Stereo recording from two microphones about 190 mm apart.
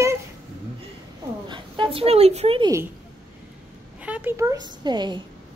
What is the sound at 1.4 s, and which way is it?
Speech, 25° right (ahead or behind).